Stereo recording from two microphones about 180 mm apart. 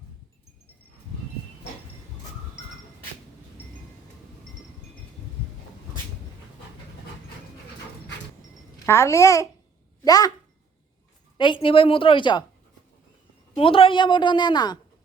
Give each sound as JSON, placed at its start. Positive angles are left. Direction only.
{"t": 8.9, "sound": "a child's voice", "side_deg": 15}
{"t": 11.3, "sound": "a woman's voice", "side_deg": 25}
{"t": 13.6, "sound": "a woman's voice", "side_deg": 30}